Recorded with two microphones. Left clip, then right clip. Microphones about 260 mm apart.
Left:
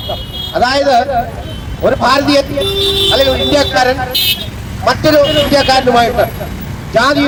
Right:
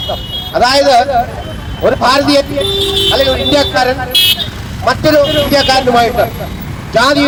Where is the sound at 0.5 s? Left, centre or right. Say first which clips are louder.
Right 2 dB; centre.